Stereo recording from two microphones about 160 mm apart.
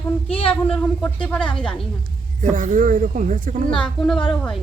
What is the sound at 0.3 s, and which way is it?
Speech, 35° left (ahead or behind).